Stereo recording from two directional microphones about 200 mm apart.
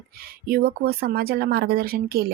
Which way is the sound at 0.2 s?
50° right (ahead or behind).